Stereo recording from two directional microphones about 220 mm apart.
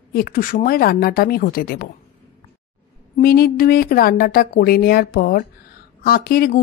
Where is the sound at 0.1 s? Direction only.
40° left (ahead or behind).